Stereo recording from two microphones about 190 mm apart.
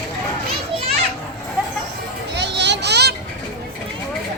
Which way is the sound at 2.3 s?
65° right (ahead or behind).